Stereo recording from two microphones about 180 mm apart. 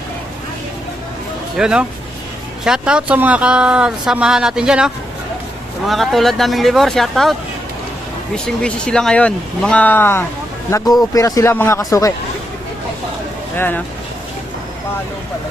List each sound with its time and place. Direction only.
1.5 s speech: 5° right (ahead or behind)
8.6 s a man's voice: 5° left (ahead or behind)
13.6 s speech: 10° left (ahead or behind)